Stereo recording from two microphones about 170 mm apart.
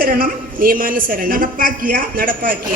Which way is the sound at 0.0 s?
55° right (ahead or behind).